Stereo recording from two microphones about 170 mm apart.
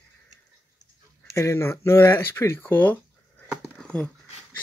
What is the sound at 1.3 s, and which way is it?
Speech, 15° left (ahead or behind).